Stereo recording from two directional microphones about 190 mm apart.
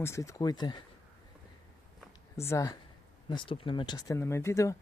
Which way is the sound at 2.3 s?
15° left (ahead or behind).